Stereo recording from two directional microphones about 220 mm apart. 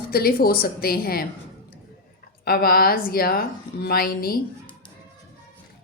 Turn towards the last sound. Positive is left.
turn(degrees=40)  # may be behind; listen again after turning